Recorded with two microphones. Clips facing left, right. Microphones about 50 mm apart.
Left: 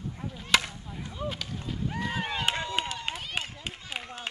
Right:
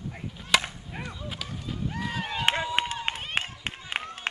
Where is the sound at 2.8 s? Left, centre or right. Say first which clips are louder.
Right 3 dB; right.